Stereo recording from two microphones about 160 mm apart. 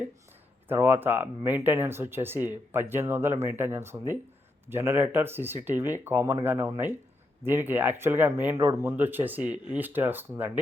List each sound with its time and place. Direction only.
0.7 s speech: 15° right (ahead or behind)